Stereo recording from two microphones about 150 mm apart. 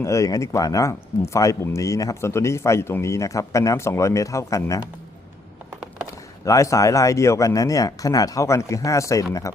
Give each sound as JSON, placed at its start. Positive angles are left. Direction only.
{"t": 0.0, "sound": "speech", "side_deg": 20}
{"t": 6.1, "sound": "speech", "side_deg": 20}